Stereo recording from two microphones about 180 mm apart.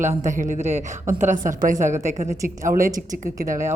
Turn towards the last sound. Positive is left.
turn(degrees=-45)  # may be behind; listen again after turning